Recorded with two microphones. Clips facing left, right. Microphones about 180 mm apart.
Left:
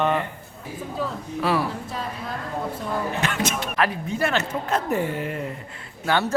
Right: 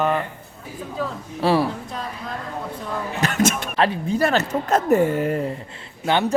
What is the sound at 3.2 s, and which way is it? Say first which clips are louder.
Speech: right 5 dB; 45° right (ahead or behind).